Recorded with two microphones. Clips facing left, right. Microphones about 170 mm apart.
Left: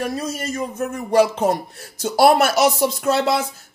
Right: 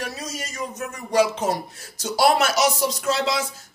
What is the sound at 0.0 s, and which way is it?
Speech, 55° left (ahead or behind).